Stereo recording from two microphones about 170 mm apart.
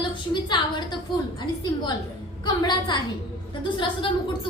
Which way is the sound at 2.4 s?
25° left (ahead or behind).